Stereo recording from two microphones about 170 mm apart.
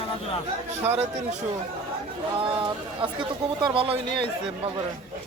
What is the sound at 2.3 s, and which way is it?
Speech, 30° right (ahead or behind).